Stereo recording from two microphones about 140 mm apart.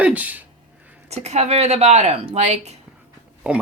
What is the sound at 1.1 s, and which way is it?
A woman's voice, 50° right (ahead or behind).